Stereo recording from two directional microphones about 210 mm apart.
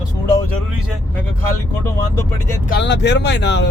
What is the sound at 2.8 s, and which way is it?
Speech, 55° left (ahead or behind).